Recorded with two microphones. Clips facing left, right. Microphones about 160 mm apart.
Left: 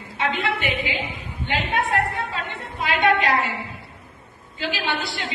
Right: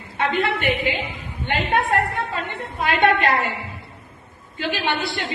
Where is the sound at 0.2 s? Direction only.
55° right (ahead or behind).